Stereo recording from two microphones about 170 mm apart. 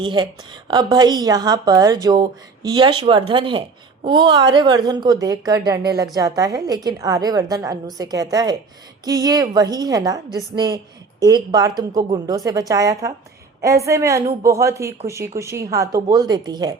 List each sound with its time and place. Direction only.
0.0 s a woman's voice: 25° right (ahead or behind)